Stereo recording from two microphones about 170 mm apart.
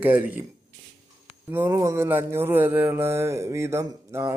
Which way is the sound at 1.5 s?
15° right (ahead or behind).